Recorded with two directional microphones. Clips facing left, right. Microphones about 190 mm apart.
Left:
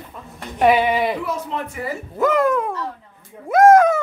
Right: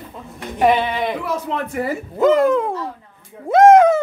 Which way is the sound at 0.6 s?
10° left (ahead or behind).